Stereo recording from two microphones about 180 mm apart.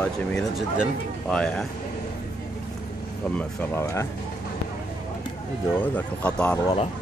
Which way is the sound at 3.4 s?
15° left (ahead or behind).